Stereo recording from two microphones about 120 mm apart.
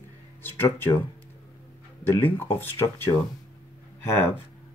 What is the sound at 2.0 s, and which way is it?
Speech, 20° left (ahead or behind).